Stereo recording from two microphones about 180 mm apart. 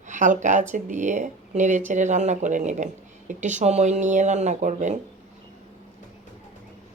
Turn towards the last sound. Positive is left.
turn(degrees=-40)  # may be behind; listen again after turning